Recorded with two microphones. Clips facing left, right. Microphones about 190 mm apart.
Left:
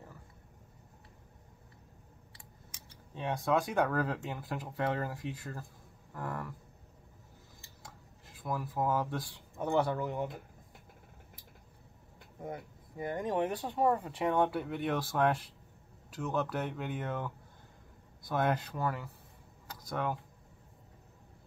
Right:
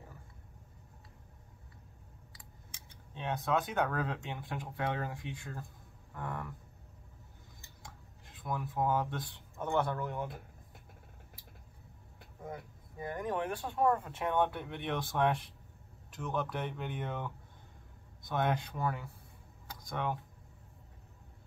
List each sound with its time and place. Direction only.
3.2 s speech: centre (ahead or behind)
7.8 s speech: 5° left (ahead or behind)
13.0 s speech: 25° left (ahead or behind)
13.9 s speech: 5° left (ahead or behind)
19.7 s a sound: 5° left (ahead or behind)